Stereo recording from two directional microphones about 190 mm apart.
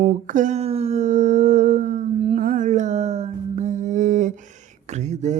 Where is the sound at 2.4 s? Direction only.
45° right (ahead or behind).